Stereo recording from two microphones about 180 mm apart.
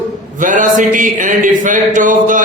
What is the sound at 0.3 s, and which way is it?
A man's voice, 45° right (ahead or behind).